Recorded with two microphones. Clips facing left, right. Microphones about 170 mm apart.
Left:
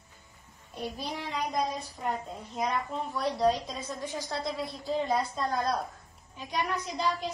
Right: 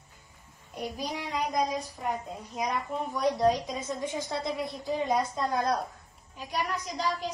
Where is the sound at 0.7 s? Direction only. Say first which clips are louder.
Right 1 dB; 15° right (ahead or behind).